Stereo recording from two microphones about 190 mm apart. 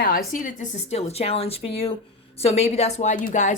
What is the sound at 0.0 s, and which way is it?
A woman's voice, 50° left (ahead or behind).